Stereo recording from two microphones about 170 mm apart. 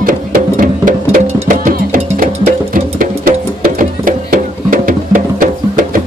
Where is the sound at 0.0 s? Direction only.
55° right (ahead or behind).